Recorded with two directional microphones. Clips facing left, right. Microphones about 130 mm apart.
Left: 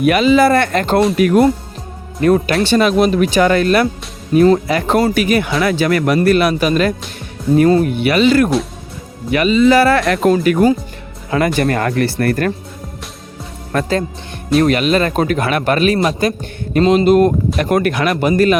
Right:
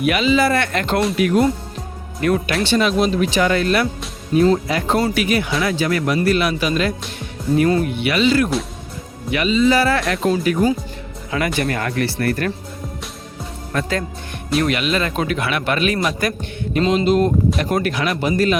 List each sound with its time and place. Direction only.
0.0 s speech: 45° left (ahead or behind)
1.1 s a man's voice: 50° left (ahead or behind)
2.2 s speech: 35° left (ahead or behind)
2.6 s a man's voice: 50° left (ahead or behind)
4.4 s speech: 65° left (ahead or behind)
5.0 s a man's voice: 45° left (ahead or behind)
5.6 s a man's voice: 70° left (ahead or behind); by 6.9 s 50° left (ahead or behind)
7.5 s a man's voice: 40° left (ahead or behind); by 10.7 s 65° left (ahead or behind)
11.3 s a man's voice: 40° left (ahead or behind)
13.7 s a man's voice: 50° left (ahead or behind)
14.6 s a man's voice: 40° left (ahead or behind)